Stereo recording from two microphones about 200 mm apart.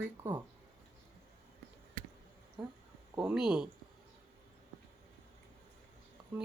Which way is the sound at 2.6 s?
Centre (ahead or behind).